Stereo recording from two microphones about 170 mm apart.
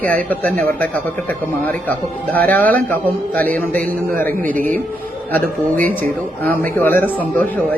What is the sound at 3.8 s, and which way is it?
Speech, 55° right (ahead or behind).